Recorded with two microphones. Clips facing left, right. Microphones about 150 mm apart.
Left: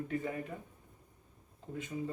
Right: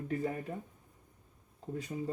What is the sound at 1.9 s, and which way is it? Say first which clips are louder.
Speech: left 1 dB; 25° right (ahead or behind).